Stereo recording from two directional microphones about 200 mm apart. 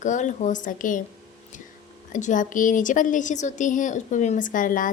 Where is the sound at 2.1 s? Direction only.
40° left (ahead or behind).